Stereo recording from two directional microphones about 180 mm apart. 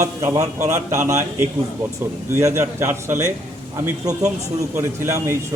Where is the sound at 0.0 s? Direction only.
15° right (ahead or behind).